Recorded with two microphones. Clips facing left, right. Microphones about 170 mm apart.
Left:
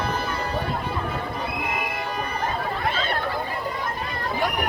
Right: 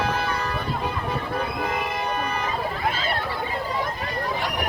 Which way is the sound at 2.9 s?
5° right (ahead or behind).